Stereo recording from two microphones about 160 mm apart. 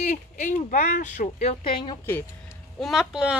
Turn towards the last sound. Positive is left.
turn(degrees=-5)  # may be behind; listen again after turning